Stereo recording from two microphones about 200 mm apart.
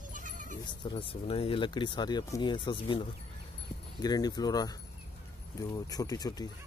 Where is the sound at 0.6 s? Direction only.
25° left (ahead or behind).